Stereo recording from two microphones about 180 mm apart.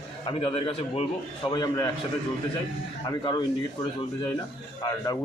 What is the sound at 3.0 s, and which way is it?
Speech, 20° left (ahead or behind).